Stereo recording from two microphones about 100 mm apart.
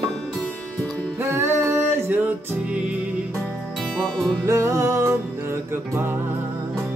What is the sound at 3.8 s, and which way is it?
Music, 5° left (ahead or behind).